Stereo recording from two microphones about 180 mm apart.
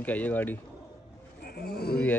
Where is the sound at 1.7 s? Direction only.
60° left (ahead or behind).